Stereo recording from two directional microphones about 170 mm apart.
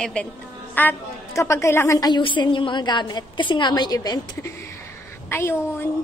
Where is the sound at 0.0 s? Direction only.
5° left (ahead or behind).